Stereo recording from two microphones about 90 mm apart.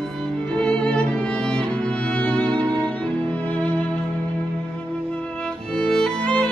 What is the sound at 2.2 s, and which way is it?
Music, 15° left (ahead or behind).